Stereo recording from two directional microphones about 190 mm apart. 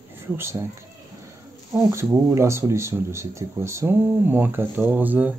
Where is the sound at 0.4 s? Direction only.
15° right (ahead or behind).